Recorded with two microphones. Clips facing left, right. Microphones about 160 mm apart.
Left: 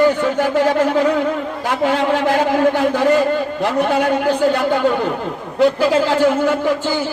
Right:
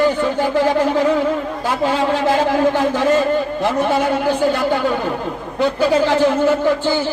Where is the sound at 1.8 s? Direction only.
15° left (ahead or behind).